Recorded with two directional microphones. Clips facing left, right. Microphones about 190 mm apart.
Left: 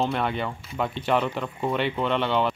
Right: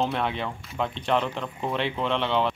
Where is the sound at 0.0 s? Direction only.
Centre (ahead or behind).